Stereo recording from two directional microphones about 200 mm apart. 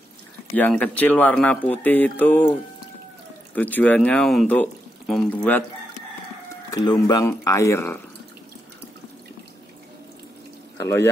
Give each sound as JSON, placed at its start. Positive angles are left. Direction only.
{"t": 0.6, "sound": "speech", "side_deg": 5}
{"t": 3.5, "sound": "speech", "side_deg": 10}
{"t": 6.7, "sound": "speech", "side_deg": 20}
{"t": 10.8, "sound": "speech", "side_deg": 10}